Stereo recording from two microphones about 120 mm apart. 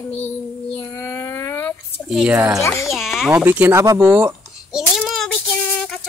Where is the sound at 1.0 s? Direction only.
25° left (ahead or behind).